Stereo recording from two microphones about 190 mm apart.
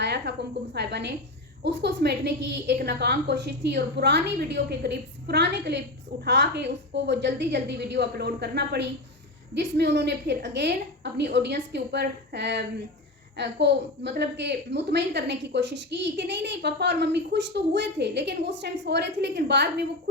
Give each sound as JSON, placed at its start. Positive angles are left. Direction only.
{"t": 0.0, "sound": "a woman's voice", "side_deg": -60}